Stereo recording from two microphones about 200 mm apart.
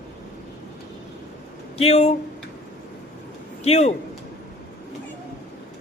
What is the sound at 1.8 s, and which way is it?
Speech, 30° left (ahead or behind).